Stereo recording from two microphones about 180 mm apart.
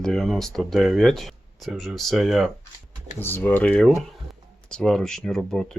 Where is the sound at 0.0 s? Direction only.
Centre (ahead or behind).